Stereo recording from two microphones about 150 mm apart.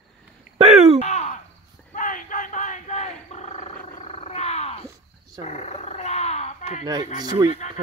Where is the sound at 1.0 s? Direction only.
50° left (ahead or behind).